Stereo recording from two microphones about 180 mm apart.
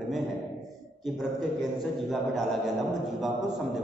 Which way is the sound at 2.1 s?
Centre (ahead or behind).